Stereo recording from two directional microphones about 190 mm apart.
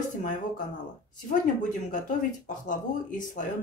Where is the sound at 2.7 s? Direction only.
40° left (ahead or behind).